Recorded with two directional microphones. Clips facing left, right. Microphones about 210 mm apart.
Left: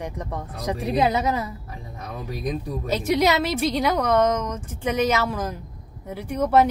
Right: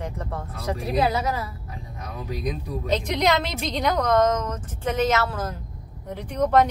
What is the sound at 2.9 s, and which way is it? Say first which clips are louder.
Speech: left 2 dB; 5° left (ahead or behind).